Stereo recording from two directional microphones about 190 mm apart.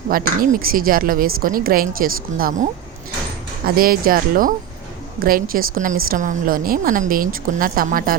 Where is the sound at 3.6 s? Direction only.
50° right (ahead or behind).